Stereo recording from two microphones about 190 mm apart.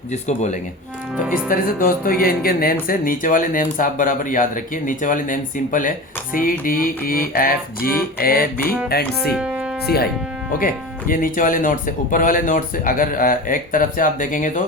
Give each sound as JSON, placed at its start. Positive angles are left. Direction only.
{"t": 0.1, "sound": "speech", "side_deg": 40}
{"t": 8.9, "sound": "music", "side_deg": 55}
{"t": 9.3, "sound": "music", "side_deg": -5}
{"t": 9.8, "sound": "music", "side_deg": 55}
{"t": 10.5, "sound": "speech", "side_deg": 45}